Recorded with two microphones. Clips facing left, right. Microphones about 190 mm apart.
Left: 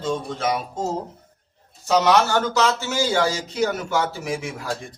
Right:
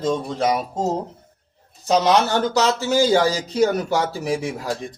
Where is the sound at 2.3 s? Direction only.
35° right (ahead or behind).